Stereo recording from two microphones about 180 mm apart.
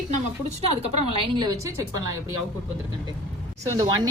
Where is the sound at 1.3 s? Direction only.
25° right (ahead or behind).